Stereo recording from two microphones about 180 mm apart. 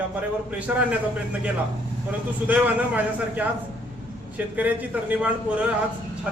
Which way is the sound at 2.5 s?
10° right (ahead or behind).